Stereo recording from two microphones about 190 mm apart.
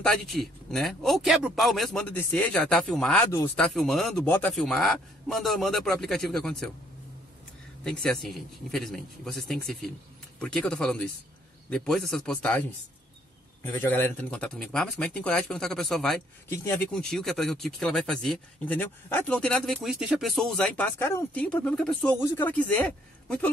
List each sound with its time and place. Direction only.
0.0 s speech: centre (ahead or behind)
7.8 s speech: 5° left (ahead or behind)
16.4 s a man's voice: 15° left (ahead or behind)
16.9 s a man's voice: 5° left (ahead or behind)